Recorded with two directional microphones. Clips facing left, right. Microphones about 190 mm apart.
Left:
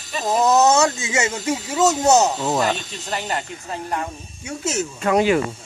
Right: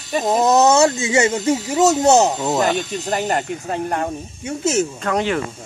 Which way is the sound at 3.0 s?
40° right (ahead or behind).